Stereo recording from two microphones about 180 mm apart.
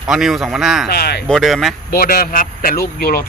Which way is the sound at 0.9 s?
60° left (ahead or behind).